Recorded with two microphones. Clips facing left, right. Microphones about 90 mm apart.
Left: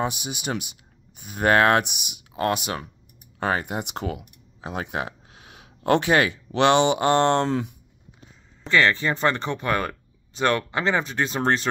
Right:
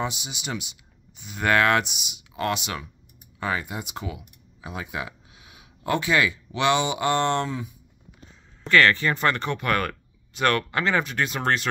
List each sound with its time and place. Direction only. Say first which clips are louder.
0.0 s speech: left 3 dB; 50° left (ahead or behind); by 1.8 s 35° left (ahead or behind)
1.8 s speech: left 2 dB; 55° left (ahead or behind)
2.3 s speech: left 3 dB; 40° left (ahead or behind)
3.3 s speech: left 3 dB; 55° left (ahead or behind); by 7.7 s 80° left
8.6 s speech: right 1 dB; 20° left (ahead or behind)